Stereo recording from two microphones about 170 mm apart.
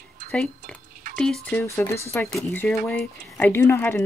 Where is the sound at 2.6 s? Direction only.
5° left (ahead or behind).